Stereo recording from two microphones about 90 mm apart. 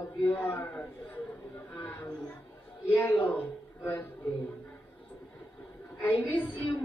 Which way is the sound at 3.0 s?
20° left (ahead or behind).